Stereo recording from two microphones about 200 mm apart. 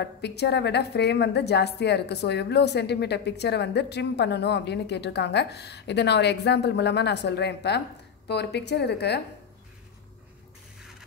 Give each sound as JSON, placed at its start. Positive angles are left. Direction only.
{"t": 0.0, "sound": "a woman's voice", "side_deg": 55}